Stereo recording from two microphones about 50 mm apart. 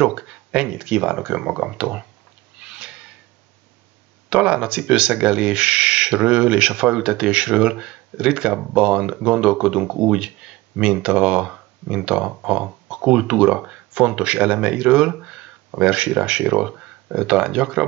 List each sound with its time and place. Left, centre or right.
0.0 s speech: centre
2.6 s a sound: centre
4.3 s speech: right